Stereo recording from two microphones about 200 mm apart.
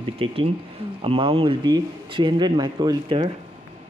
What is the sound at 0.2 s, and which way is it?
Speech, 25° right (ahead or behind).